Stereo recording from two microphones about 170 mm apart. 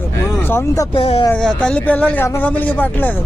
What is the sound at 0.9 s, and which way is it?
Speech, 35° left (ahead or behind).